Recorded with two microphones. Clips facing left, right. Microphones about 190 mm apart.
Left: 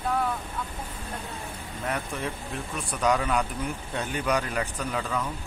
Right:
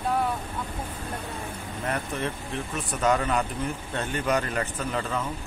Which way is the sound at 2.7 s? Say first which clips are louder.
Right 1 dB; 5° right (ahead or behind).